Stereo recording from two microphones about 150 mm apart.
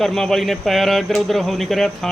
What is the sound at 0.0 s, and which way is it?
Speech, centre (ahead or behind).